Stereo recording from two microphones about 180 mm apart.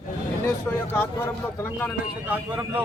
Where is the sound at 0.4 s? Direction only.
15° left (ahead or behind).